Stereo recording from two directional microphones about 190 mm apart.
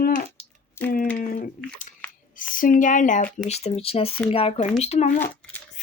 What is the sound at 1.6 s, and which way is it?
Speech, 45° left (ahead or behind).